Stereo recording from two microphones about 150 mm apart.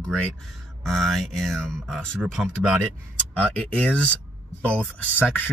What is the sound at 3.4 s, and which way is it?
Speech, 10° left (ahead or behind).